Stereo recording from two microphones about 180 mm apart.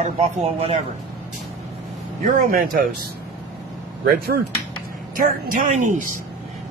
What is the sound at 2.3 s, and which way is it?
Speech, 50° right (ahead or behind).